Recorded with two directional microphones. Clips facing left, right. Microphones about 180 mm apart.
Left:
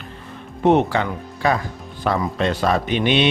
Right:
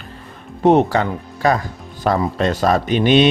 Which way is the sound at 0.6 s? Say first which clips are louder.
Right 3 dB; 35° right (ahead or behind).